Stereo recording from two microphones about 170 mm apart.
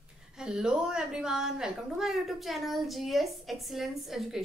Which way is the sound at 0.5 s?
5° right (ahead or behind).